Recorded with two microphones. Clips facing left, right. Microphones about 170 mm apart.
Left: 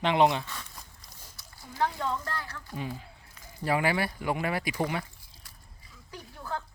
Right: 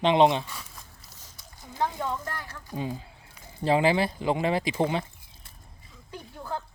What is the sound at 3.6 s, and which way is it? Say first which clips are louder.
Speech: right 5 dB; 25° right (ahead or behind).